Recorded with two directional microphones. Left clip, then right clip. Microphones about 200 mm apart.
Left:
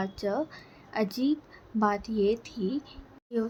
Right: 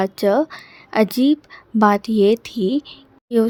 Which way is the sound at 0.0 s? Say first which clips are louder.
Right 14 dB; 50° right (ahead or behind).